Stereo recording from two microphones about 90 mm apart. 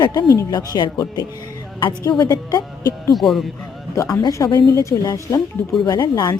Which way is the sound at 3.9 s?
45° left (ahead or behind).